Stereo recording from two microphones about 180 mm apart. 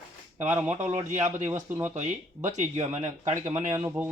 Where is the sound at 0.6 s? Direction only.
40° right (ahead or behind).